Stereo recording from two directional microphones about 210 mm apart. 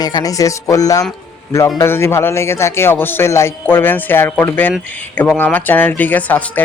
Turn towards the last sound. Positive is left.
turn(degrees=10)  # may be behind; listen again after turning